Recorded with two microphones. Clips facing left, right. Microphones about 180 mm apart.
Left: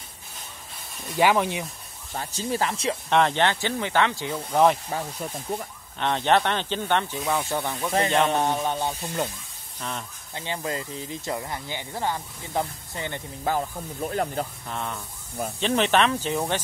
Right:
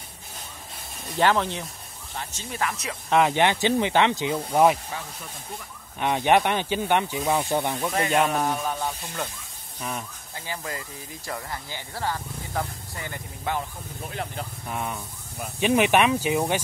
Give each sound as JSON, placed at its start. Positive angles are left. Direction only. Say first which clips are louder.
{"t": 1.1, "sound": "speech", "louder": "left 1 dB", "side_deg": 10}
{"t": 2.1, "sound": "speech", "louder": "left 5 dB", "side_deg": 35}
{"t": 3.1, "sound": "speech", "louder": "right 2 dB", "side_deg": -5}
{"t": 4.9, "sound": "speech", "louder": "left 6 dB", "side_deg": 40}
{"t": 5.9, "sound": "speech", "louder": "right 1 dB", "side_deg": -10}
{"t": 8.3, "sound": "speech", "louder": "left 2 dB", "side_deg": 25}
{"t": 9.8, "sound": "speech", "louder": "right 1 dB", "side_deg": -10}
{"t": 10.3, "sound": "speech", "louder": "left 4 dB", "side_deg": 25}
{"t": 13.4, "sound": "speech", "louder": "left 3 dB", "side_deg": 40}
{"t": 14.7, "sound": "speech", "louder": "right 1 dB", "side_deg": -10}